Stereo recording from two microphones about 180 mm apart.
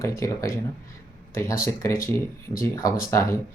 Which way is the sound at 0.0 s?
15° left (ahead or behind).